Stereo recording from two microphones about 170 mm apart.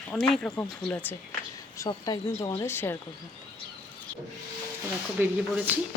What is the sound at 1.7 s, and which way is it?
Speech, 20° left (ahead or behind).